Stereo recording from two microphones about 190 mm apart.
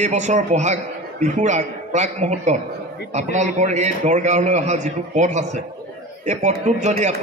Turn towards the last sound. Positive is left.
turn(degrees=-35)  # may be behind; listen again after turning